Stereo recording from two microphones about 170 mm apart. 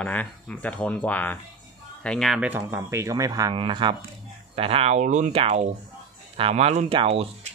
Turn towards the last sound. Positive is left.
turn(degrees=-35)  # may be behind; listen again after turning